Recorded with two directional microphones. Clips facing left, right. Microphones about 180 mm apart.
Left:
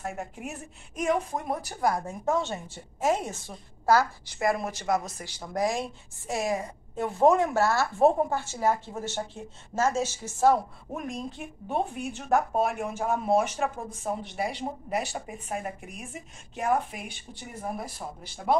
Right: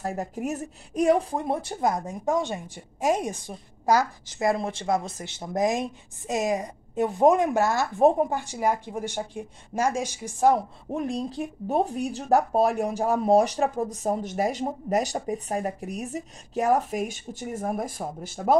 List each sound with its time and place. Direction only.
0.0 s speech: 35° right (ahead or behind); by 10.6 s 15° right (ahead or behind)
10.9 s speech: 30° right (ahead or behind)